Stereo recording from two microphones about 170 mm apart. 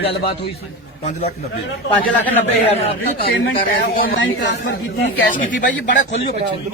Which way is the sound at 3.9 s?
75° left (ahead or behind).